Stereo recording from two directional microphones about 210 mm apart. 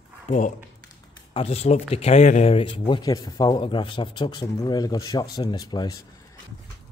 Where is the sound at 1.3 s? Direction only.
30° left (ahead or behind).